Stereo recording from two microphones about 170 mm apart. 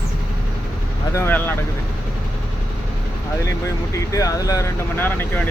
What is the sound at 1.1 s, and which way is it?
Speech, 15° left (ahead or behind).